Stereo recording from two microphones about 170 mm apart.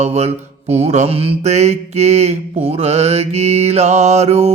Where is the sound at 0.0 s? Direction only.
40° right (ahead or behind).